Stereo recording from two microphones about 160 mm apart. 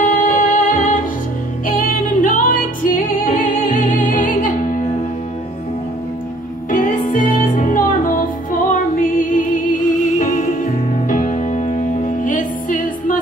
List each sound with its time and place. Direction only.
0.0 s music: 55° left (ahead or behind)
6.7 s music: 55° left (ahead or behind)